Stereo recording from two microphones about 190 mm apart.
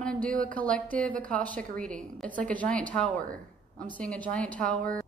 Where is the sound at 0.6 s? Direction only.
5° left (ahead or behind).